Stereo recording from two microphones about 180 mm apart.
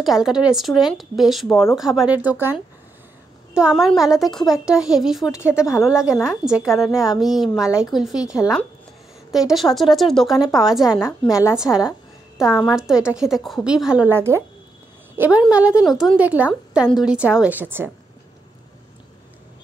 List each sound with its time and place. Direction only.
0.0 s a woman's voice: centre (ahead or behind)
5.3 s a woman's voice: 15° left (ahead or behind)
6.1 s a woman's voice: 5° right (ahead or behind)
9.3 s a woman's voice: centre (ahead or behind)
11.0 s a woman's voice: 15° left (ahead or behind)
12.7 s a woman's voice: 5° right (ahead or behind)